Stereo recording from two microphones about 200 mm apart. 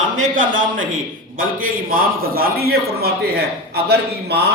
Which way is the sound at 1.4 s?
45° right (ahead or behind).